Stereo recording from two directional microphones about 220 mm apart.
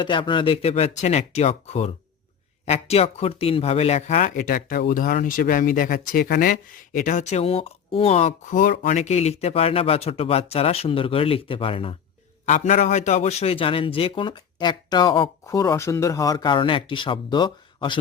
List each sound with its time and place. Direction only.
0.0 s speech: 20° left (ahead or behind)